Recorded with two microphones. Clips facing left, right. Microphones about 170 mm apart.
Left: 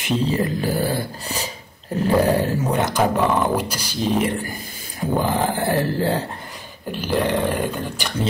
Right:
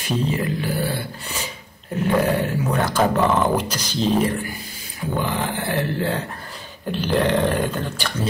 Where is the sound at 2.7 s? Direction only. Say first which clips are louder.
Left 1 dB; 20° left (ahead or behind).